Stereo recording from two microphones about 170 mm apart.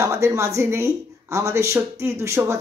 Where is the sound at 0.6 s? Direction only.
15° right (ahead or behind).